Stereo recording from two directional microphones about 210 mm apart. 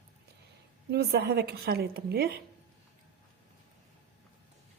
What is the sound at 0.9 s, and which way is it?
A woman's voice, 50° right (ahead or behind).